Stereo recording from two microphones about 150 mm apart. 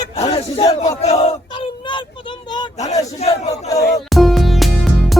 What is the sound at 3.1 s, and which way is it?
Battle cry, 45° left (ahead or behind).